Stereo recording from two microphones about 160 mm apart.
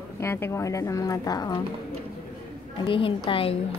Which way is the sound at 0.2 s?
15° left (ahead or behind).